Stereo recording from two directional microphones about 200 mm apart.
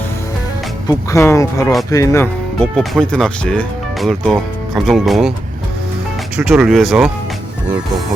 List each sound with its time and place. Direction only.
0.9 s speech: 15° left (ahead or behind); by 5.3 s centre (ahead or behind)
6.3 s speech: 5° right (ahead or behind)